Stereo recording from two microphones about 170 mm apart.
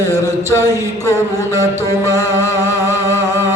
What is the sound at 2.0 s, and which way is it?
Music, 15° right (ahead or behind).